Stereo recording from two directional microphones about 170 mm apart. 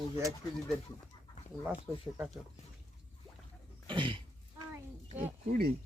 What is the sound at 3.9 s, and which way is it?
Throat clearing, 30° right (ahead or behind).